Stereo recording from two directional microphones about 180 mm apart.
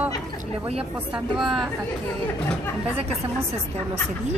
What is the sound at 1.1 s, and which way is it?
Speech, 5° right (ahead or behind).